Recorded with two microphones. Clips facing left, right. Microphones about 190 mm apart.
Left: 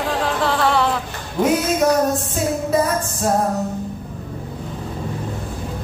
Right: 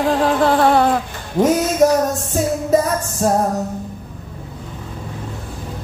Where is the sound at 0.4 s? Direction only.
50° right (ahead or behind).